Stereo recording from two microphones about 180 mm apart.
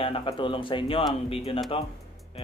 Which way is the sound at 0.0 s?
30° left (ahead or behind).